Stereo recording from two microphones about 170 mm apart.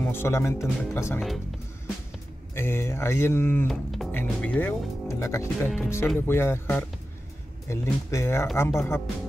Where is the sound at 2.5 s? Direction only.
15° left (ahead or behind).